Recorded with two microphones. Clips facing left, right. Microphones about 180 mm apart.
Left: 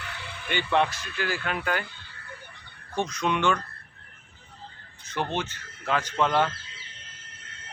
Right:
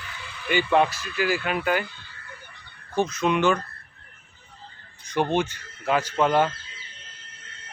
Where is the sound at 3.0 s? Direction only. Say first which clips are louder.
Right 4 dB; 5° right (ahead or behind).